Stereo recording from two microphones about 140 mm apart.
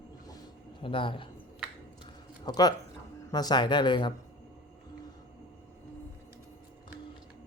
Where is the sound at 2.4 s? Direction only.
30° left (ahead or behind).